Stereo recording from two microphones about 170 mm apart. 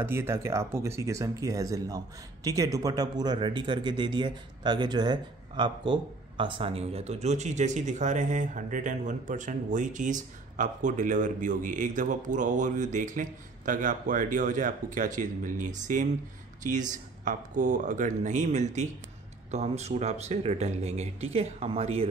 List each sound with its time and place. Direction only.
0.0 s speech: 15° right (ahead or behind); by 22.0 s 35° right (ahead or behind)